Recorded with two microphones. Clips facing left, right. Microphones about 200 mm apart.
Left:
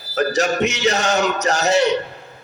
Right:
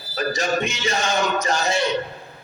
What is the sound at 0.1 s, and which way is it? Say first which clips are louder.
A man's voice: left 4 dB; 70° left (ahead or behind).